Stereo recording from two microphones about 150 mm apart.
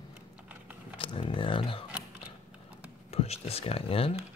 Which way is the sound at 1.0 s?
35° left (ahead or behind).